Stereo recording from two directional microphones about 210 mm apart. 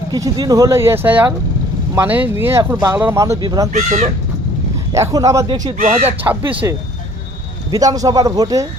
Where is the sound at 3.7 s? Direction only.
35° right (ahead or behind).